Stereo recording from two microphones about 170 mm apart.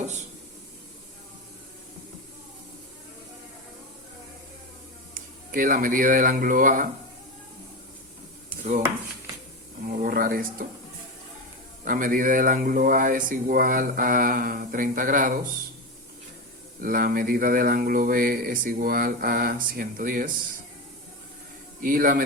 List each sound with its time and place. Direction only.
0.0 s a sound: 45° right (ahead or behind)
5.1 s speech: 55° right (ahead or behind)
9.8 s speech: 55° right (ahead or behind)
11.9 s speech: 55° right (ahead or behind)
16.8 s speech: 55° right (ahead or behind)
21.8 s a man's voice: 55° right (ahead or behind)